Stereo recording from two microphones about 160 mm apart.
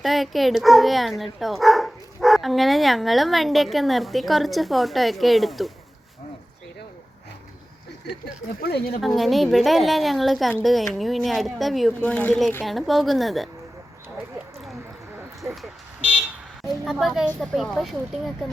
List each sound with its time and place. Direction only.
0.0 s speech: centre (ahead or behind)
8.6 s speech: 75° left (ahead or behind)
9.0 s speech: centre (ahead or behind)
15.4 s vehicle: 10° right (ahead or behind)
16.8 s speech: centre (ahead or behind)